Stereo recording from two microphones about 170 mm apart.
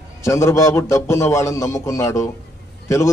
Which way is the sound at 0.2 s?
15° left (ahead or behind).